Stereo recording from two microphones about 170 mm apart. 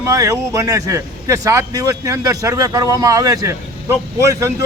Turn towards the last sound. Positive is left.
turn(degrees=-20)  # may be behind; listen again after turning